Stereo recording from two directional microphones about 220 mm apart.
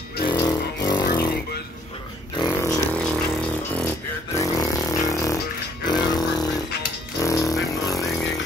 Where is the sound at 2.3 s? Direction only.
15° left (ahead or behind).